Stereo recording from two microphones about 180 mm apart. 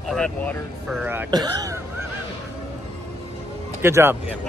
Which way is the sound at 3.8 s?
15° right (ahead or behind).